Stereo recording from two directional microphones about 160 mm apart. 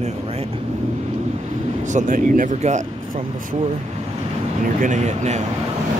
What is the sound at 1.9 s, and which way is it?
Speech, 55° right (ahead or behind).